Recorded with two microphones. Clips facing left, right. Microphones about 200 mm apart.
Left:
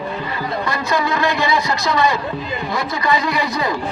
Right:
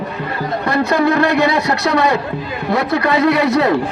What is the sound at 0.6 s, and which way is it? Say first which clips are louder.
Speech: right 7 dB; 60° right (ahead or behind).